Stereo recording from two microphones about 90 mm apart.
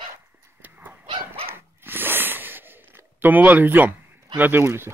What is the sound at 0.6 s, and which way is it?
Cattle, 20° right (ahead or behind).